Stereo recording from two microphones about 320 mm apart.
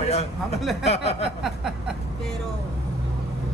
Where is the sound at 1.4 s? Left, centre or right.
Centre.